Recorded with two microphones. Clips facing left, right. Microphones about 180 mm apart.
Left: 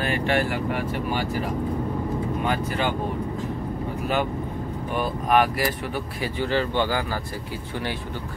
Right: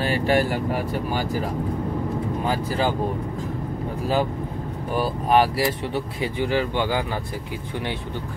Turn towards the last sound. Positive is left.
turn(degrees=-15)  # may be behind; listen again after turning